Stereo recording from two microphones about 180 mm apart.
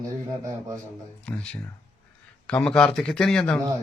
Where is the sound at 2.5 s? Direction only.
5° left (ahead or behind).